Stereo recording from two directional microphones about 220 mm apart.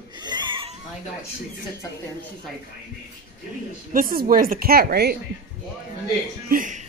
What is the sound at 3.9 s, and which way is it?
A woman's voice, 40° right (ahead or behind).